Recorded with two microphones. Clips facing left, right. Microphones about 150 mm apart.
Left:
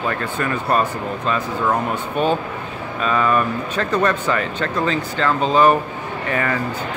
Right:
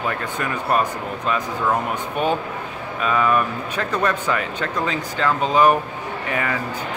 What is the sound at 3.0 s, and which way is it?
Speech, 5° right (ahead or behind).